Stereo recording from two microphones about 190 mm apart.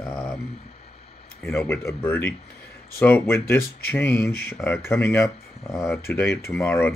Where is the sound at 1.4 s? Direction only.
10° left (ahead or behind).